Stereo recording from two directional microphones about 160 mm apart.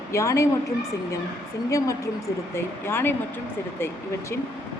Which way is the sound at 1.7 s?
20° left (ahead or behind).